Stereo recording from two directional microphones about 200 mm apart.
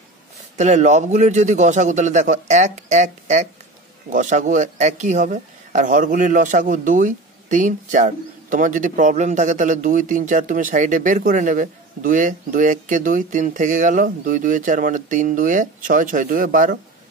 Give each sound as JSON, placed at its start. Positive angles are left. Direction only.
{"t": 0.6, "sound": "speech", "side_deg": -35}